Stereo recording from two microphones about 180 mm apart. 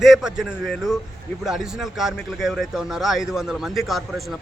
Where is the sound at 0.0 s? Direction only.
Centre (ahead or behind).